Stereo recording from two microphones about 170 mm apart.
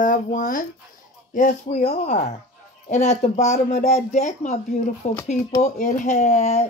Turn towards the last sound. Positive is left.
turn(degrees=40)  # may be behind; listen again after turning